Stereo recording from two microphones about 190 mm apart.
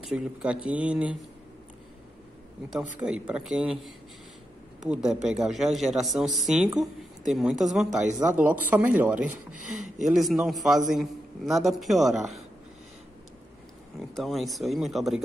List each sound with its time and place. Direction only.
0.1 s speech: 5° right (ahead or behind)
2.7 s speech: 5° right (ahead or behind)
9.5 s speech: 40° right (ahead or behind)
10.1 s speech: centre (ahead or behind)
14.1 s speech: centre (ahead or behind)